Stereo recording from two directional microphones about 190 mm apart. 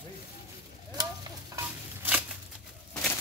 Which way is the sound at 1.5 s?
10° right (ahead or behind).